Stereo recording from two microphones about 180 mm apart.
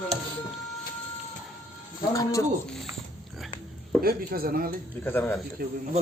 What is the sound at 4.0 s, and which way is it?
Speech, 55° right (ahead or behind).